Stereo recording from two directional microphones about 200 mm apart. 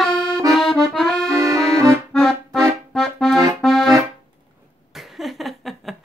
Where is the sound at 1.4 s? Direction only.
15° right (ahead or behind).